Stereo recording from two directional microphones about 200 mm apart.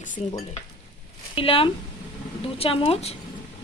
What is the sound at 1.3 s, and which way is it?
A woman's voice, 25° left (ahead or behind).